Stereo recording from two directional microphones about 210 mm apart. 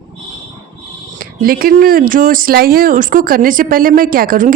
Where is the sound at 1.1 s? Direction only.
45° right (ahead or behind).